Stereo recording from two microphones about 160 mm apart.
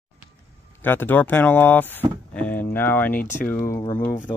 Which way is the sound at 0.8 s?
10° left (ahead or behind).